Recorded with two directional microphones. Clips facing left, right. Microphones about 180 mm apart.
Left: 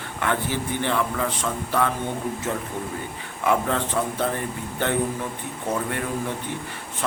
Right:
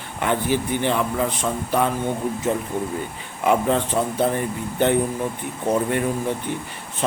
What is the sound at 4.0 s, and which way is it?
Speech, 15° right (ahead or behind).